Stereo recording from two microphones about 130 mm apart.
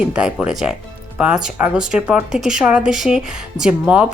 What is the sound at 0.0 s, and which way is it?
Speech, 5° right (ahead or behind).